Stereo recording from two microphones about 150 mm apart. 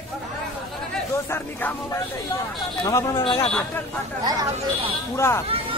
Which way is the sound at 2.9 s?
20° left (ahead or behind).